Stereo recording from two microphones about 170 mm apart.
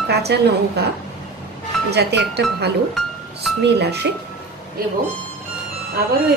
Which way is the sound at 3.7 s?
75° right (ahead or behind).